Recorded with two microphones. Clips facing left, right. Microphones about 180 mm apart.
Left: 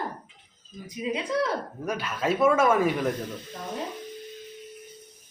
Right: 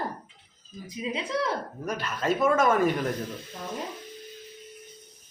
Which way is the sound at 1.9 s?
5° left (ahead or behind).